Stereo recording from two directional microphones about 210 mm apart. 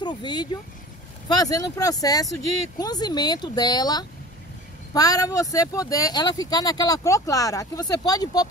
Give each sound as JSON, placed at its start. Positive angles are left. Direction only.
{"t": 0.0, "sound": "speech", "side_deg": 20}